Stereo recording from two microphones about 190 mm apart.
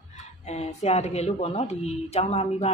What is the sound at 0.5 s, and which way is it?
Speech, 35° left (ahead or behind).